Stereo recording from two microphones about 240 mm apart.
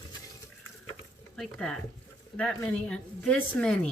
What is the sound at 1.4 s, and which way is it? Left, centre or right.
Speech, centre.